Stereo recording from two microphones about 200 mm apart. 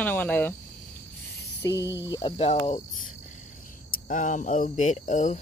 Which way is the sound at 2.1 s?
25° left (ahead or behind).